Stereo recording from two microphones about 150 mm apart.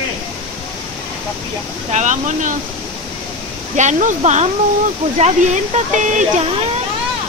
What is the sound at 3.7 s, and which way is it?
Speech, 55° right (ahead or behind).